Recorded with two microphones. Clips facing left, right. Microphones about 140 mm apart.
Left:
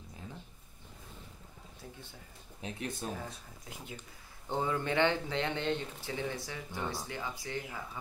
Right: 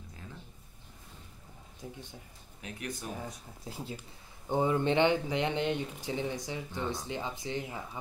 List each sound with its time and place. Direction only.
2.6 s speech: 25° left (ahead or behind)
3.6 s speech: 30° right (ahead or behind)
4.5 s speech: 20° right (ahead or behind)